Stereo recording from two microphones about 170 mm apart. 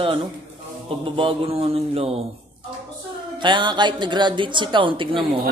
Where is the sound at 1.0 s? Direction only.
30° right (ahead or behind).